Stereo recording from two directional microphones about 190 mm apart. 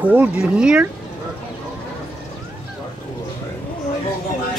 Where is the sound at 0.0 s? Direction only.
10° right (ahead or behind).